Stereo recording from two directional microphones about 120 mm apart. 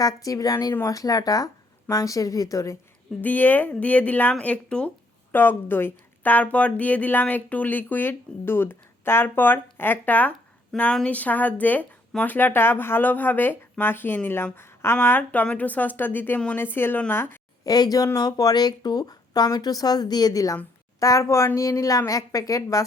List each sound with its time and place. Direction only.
0.0 s a woman's voice: 30° left (ahead or behind)
3.2 s a woman's voice: 15° left (ahead or behind)
17.6 s a woman's voice: 30° left (ahead or behind)